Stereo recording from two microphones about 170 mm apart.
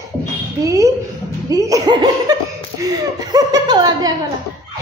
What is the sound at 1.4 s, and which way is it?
Laughter, 20° right (ahead or behind).